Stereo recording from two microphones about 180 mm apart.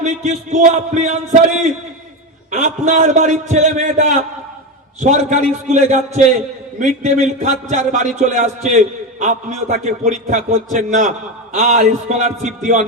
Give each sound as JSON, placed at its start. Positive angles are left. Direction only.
{"t": 0.0, "sound": "a man's voice", "side_deg": -40}